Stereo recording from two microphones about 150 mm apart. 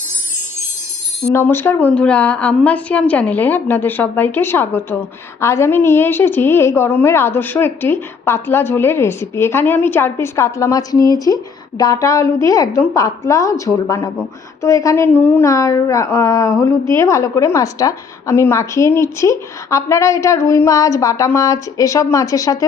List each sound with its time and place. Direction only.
1.3 s a woman's voice: 15° left (ahead or behind)